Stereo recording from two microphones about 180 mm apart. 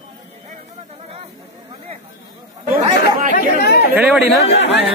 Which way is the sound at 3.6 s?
65° left (ahead or behind).